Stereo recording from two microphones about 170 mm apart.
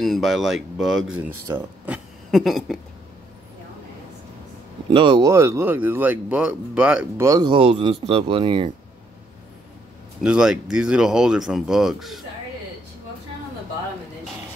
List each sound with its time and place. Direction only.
0.0 s speech: centre (ahead or behind)
2.3 s speech: centre (ahead or behind)
4.9 s speech: 30° right (ahead or behind)
5.3 s speech: 15° right (ahead or behind)
7.2 s speech: 25° right (ahead or behind)
10.2 s speech: 5° right (ahead or behind)